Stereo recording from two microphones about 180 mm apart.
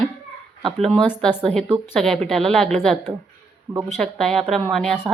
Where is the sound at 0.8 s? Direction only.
5° left (ahead or behind).